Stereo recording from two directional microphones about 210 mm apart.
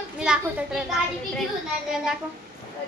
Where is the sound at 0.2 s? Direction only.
5° right (ahead or behind).